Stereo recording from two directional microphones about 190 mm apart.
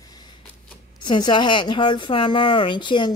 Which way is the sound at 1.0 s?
25° left (ahead or behind).